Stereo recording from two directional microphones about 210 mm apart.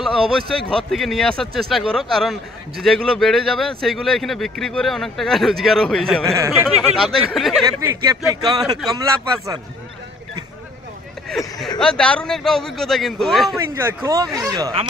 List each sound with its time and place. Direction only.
0.0 s speech: centre (ahead or behind)
6.3 s speech: 15° right (ahead or behind)
7.0 s speech: centre (ahead or behind)
7.8 s speech: 15° right (ahead or behind)
11.2 s speech: centre (ahead or behind)
13.8 s speech: 15° right (ahead or behind)